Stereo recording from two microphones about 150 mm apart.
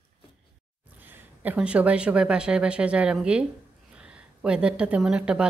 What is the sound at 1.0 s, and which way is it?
Speech, 10° right (ahead or behind).